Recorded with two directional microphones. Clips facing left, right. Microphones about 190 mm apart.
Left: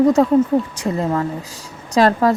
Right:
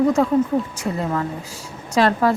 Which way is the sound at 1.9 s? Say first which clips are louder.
Left 3 dB; 40° left (ahead or behind).